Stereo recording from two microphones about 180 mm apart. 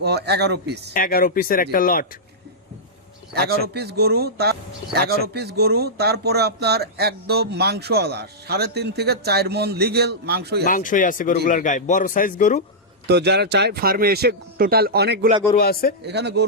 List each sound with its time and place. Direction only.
0.0 s a man's voice: 65° right (ahead or behind)
0.9 s a man's voice: 55° left (ahead or behind)
3.3 s speech: 65° right (ahead or behind)
10.7 s a man's voice: 45° left (ahead or behind)
13.1 s speech: 70° right (ahead or behind)
15.5 s speech: 55° left (ahead or behind)
16.0 s a man's voice: 70° right (ahead or behind)